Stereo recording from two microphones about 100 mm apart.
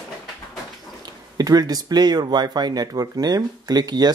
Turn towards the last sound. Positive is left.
turn(degrees=-40)  # may be behind; listen again after turning